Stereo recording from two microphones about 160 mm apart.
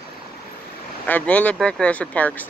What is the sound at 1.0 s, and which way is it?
Speech, 10° left (ahead or behind).